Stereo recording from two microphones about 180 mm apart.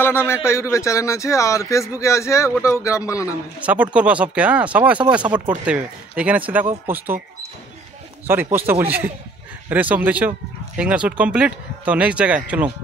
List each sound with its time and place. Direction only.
0.0 s a man's voice: 10° left (ahead or behind)
3.6 s speech: 5° right (ahead or behind)
8.3 s speech: 10° right (ahead or behind)